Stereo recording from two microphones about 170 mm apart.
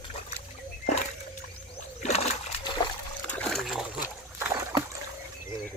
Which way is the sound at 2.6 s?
25° left (ahead or behind).